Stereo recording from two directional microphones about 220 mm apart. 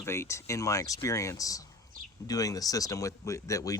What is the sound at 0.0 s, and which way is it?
Speech, 10° left (ahead or behind).